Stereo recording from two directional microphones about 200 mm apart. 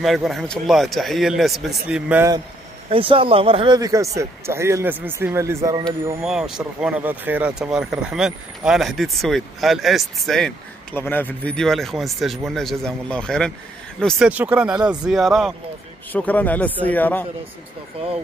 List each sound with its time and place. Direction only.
0.0 s speech: centre (ahead or behind)
2.9 s speech: 25° right (ahead or behind)
6.2 s speech: 5° right (ahead or behind)